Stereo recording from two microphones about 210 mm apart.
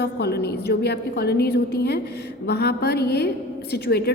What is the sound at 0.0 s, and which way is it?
A woman's voice, 50° left (ahead or behind).